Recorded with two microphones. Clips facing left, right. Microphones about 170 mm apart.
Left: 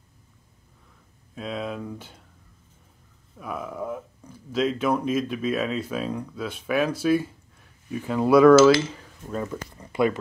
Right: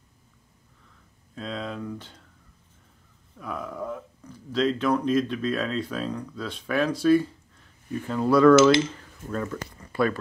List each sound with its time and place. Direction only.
1.3 s speech: 10° left (ahead or behind)
3.3 s speech: 5° left (ahead or behind)